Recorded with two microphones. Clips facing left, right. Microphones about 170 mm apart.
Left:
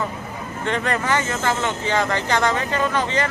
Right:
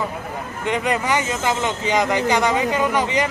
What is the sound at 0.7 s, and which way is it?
Speech, 15° right (ahead or behind).